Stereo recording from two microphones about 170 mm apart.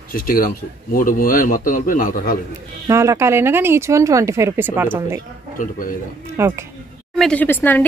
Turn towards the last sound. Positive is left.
turn(degrees=10)  # may be behind; listen again after turning